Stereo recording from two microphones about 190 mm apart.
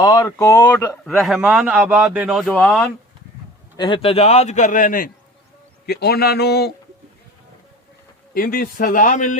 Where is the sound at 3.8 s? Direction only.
25° left (ahead or behind); by 6.7 s 60° left (ahead or behind).